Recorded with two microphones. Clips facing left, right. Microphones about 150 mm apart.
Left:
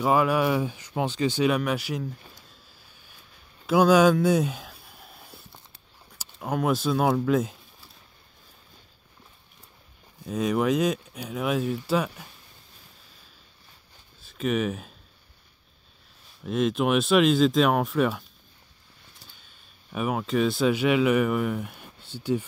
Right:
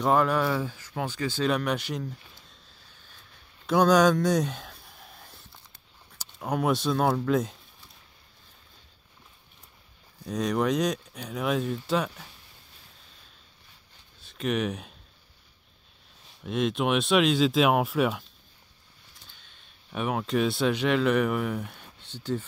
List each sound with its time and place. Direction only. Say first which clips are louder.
0.0 s speech: left 1 dB; 5° left (ahead or behind)
1.5 s speech: left 2 dB; 5° left (ahead or behind)
2.9 s vehicle: left 1 dB; 10° left (ahead or behind)
3.6 s a sound: left 2 dB; 5° left (ahead or behind)
6.1 s speech: left 1 dB; centre (ahead or behind)
10.2 s speech: left 2 dB; 5° left (ahead or behind)
14.2 s speech: left 2 dB; centre (ahead or behind)
16.4 s speech: left 2 dB; centre (ahead or behind)
19.3 s speech: left 1 dB; 5° left (ahead or behind)